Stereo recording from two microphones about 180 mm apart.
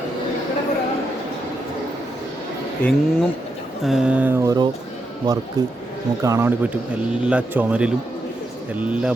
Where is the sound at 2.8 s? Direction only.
5° left (ahead or behind).